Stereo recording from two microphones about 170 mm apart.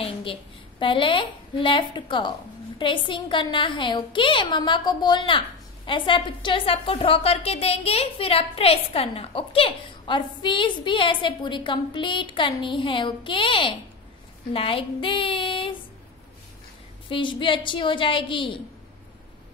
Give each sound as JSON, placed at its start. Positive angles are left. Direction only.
{"t": 0.0, "sound": "a woman's voice", "side_deg": 30}
{"t": 17.1, "sound": "a woman's voice", "side_deg": 30}